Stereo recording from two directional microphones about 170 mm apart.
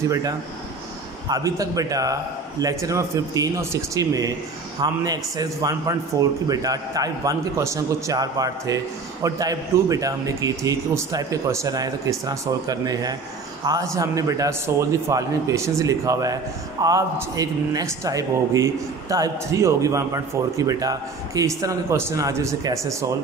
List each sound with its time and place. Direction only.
0.1 s a man's voice: 20° right (ahead or behind)